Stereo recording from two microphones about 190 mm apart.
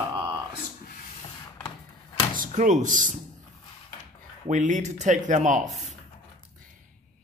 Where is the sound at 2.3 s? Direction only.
45° right (ahead or behind).